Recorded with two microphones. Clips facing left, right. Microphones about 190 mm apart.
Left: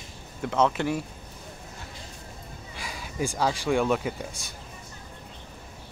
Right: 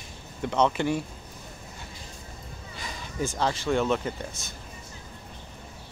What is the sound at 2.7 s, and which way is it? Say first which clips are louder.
Speech: even; 5° left (ahead or behind).